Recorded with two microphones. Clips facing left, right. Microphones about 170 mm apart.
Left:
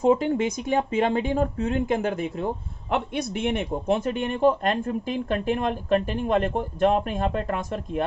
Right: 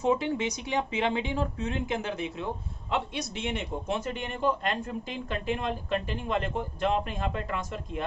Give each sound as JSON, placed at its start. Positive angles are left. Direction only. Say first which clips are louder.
{"t": 0.0, "sound": "speech", "louder": "left 6 dB", "side_deg": 50}